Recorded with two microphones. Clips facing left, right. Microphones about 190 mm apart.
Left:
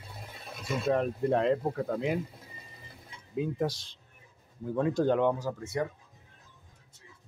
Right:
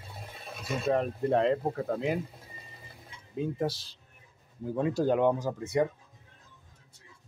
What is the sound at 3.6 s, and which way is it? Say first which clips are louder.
Speech: right 1 dB; 5° right (ahead or behind).